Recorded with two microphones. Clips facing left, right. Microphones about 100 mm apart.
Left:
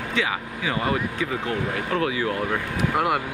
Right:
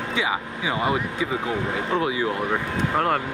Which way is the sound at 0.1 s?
20° right (ahead or behind).